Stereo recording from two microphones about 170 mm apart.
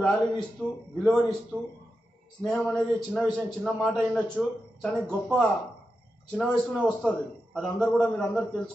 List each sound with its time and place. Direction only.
0.0 s a man's voice: 5° left (ahead or behind)